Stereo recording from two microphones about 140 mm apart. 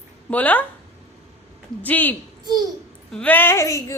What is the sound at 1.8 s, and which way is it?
A woman's voice, 10° left (ahead or behind).